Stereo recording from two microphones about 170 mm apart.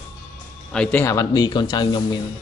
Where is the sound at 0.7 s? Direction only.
5° left (ahead or behind); by 2.2 s 25° left (ahead or behind).